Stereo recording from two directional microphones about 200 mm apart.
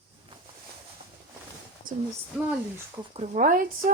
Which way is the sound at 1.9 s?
45° right (ahead or behind).